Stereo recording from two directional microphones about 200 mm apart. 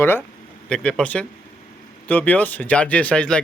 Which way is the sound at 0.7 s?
5° left (ahead or behind).